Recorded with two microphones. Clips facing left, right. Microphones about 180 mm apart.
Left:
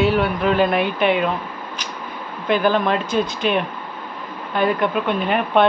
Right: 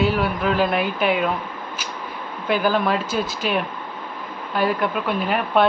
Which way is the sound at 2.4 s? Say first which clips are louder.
Left 2 dB; 5° right (ahead or behind).